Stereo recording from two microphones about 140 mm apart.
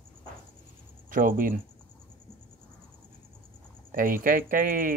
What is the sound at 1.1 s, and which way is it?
Speech, 80° right.